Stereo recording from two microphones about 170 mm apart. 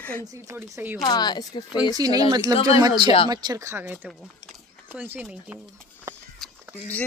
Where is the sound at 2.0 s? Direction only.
20° right (ahead or behind).